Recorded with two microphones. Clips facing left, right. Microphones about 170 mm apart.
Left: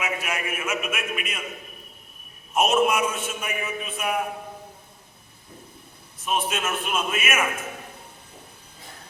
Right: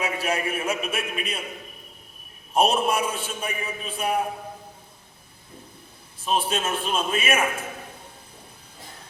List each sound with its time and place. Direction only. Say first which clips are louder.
0.0 s a man's voice: right 3 dB; 35° right (ahead or behind)
2.5 s a man's voice: left 1 dB; 35° right (ahead or behind)
6.2 s a man's voice: right 2 dB; 30° right (ahead or behind)